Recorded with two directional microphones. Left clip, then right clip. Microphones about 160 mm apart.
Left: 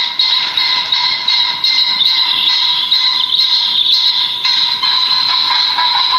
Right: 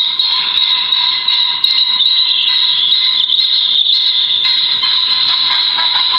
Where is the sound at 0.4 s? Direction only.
70° left (ahead or behind).